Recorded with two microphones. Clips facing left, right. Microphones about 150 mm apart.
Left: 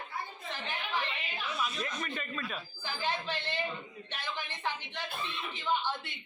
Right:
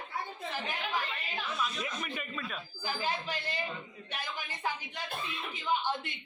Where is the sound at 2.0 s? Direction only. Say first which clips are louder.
Left 1 dB; 10° right (ahead or behind).